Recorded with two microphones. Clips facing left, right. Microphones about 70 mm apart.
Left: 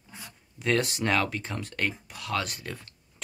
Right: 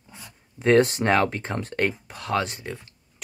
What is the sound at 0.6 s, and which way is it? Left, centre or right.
Speech, right.